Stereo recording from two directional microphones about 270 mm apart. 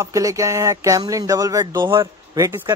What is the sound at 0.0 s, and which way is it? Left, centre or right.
A man's voice, centre.